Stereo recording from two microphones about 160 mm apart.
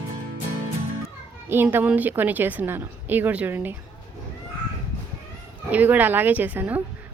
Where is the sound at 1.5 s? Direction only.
15° right (ahead or behind).